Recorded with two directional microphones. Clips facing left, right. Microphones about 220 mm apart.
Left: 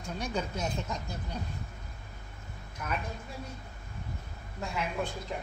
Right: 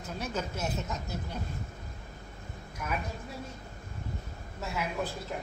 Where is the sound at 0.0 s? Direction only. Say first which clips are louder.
Left 1 dB; 5° right (ahead or behind).